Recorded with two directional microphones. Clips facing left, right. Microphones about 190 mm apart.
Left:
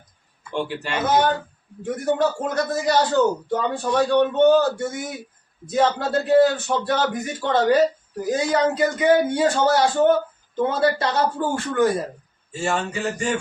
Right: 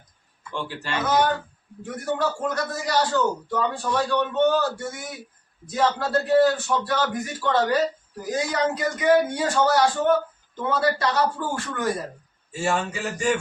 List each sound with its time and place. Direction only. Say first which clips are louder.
0.5 s a man's voice: left 4 dB; 15° left (ahead or behind)
12.5 s speech: even; 5° right (ahead or behind)